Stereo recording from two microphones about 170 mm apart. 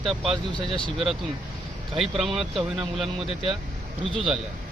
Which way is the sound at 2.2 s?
Centre (ahead or behind).